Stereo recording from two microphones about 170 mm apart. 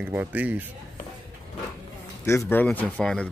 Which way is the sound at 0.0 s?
10° right (ahead or behind).